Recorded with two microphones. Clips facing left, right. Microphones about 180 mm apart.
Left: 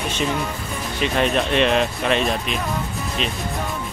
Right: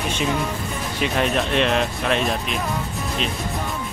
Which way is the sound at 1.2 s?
Centre (ahead or behind).